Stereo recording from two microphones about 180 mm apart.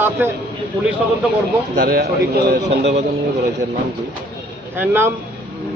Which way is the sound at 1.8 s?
60° right (ahead or behind).